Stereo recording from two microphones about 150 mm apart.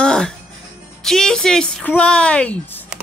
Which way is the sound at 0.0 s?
5° left (ahead or behind).